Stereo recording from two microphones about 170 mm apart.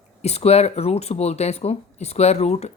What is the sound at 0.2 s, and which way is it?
Speech, 40° left (ahead or behind).